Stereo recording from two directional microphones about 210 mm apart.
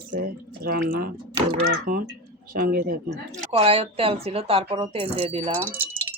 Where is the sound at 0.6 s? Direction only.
45° right (ahead or behind).